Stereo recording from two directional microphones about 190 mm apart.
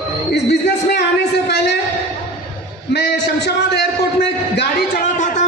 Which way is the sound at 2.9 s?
60° left (ahead or behind).